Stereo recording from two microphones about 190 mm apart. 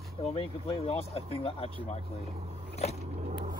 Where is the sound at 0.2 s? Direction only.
30° left (ahead or behind).